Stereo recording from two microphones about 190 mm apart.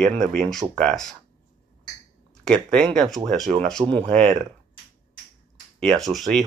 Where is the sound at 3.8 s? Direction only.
15° right (ahead or behind).